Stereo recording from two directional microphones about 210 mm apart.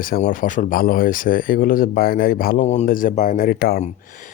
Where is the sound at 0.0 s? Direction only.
40° left (ahead or behind).